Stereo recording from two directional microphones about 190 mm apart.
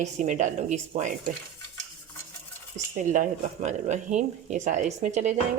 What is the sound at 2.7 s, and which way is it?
Speech, 40° right (ahead or behind).